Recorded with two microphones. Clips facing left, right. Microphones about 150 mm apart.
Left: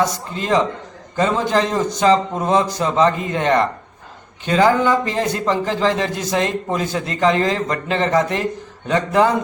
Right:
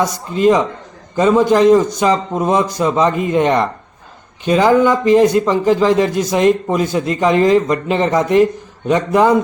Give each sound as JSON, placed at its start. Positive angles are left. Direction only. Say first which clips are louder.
{"t": 0.0, "sound": "speech", "louder": "right 7 dB", "side_deg": -15}